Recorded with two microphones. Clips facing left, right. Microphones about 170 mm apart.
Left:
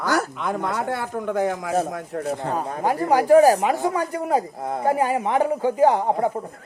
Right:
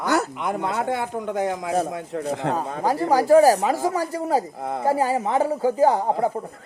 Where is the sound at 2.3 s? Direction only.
90° right.